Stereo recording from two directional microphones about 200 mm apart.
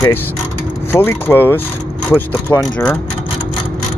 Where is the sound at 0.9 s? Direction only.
10° left (ahead or behind).